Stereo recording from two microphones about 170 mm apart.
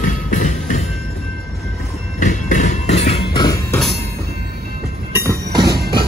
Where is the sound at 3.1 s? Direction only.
25° left (ahead or behind).